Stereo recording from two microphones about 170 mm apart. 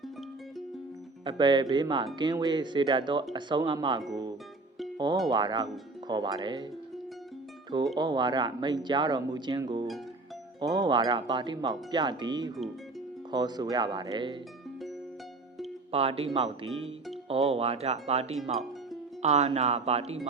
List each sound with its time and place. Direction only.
1.2 s speech: 30° right (ahead or behind)
4.1 s music: 25° right (ahead or behind)
4.9 s speech: 25° right (ahead or behind)
7.9 s speech: 25° right (ahead or behind)
15.9 s speech: 35° right (ahead or behind)